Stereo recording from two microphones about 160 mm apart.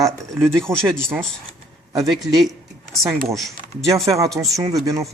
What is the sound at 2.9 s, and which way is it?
Speech, centre (ahead or behind).